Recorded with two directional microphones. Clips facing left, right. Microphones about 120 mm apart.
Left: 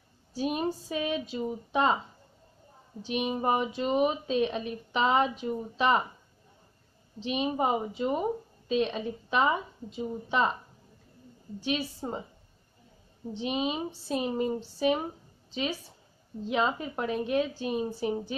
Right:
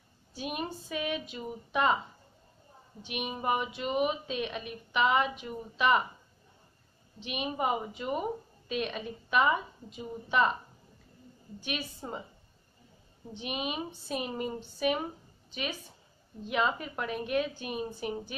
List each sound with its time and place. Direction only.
0.3 s a woman's voice: 35° left (ahead or behind)
3.0 s a woman's voice: 30° left (ahead or behind)
7.2 s a woman's voice: 30° left (ahead or behind)
11.6 s a woman's voice: 30° left (ahead or behind)
13.3 s a woman's voice: 30° left (ahead or behind)